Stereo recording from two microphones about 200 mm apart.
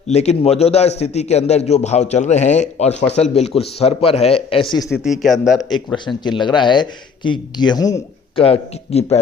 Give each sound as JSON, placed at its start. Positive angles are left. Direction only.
{"t": 0.1, "sound": "a man's voice", "side_deg": 35}
{"t": 4.9, "sound": "speech", "side_deg": 0}
{"t": 6.2, "sound": "a man's voice", "side_deg": 20}
{"t": 8.4, "sound": "a man's voice", "side_deg": 30}